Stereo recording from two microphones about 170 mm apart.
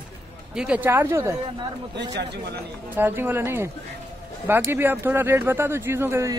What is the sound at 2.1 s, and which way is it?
Speech, 85° right.